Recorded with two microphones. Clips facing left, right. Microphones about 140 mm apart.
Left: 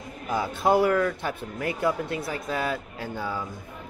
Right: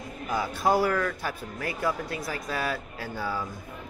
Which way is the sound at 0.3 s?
20° left (ahead or behind).